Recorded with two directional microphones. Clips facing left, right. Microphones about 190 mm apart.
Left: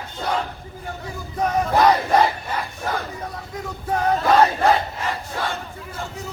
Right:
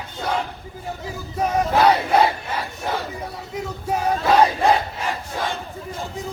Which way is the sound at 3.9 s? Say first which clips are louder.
Left 1 dB; 10° right (ahead or behind).